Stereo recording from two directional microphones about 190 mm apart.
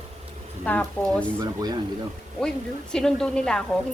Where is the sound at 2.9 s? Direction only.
5° left (ahead or behind).